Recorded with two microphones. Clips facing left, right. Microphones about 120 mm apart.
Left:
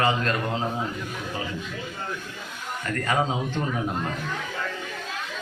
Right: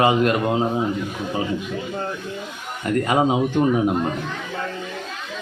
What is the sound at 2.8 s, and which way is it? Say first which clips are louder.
Speech: right 7 dB; 20° right (ahead or behind).